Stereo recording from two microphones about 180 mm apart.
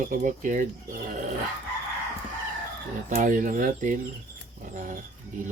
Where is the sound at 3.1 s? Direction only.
45° right (ahead or behind).